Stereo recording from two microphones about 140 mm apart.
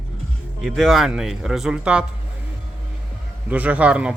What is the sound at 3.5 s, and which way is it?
Speech, 10° right (ahead or behind).